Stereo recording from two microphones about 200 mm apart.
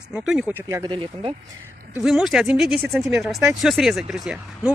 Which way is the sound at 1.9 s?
Centre (ahead or behind).